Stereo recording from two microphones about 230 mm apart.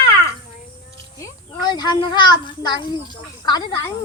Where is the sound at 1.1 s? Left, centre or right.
Centre.